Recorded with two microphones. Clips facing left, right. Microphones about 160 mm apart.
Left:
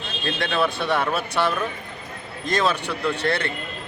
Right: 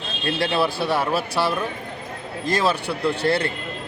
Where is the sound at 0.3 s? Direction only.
30° right (ahead or behind).